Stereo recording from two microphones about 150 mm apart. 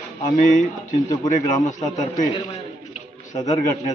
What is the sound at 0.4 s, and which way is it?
A man's voice, 60° left (ahead or behind).